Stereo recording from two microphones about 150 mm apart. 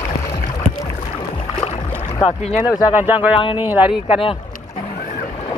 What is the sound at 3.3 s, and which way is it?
Speech, 35° left (ahead or behind).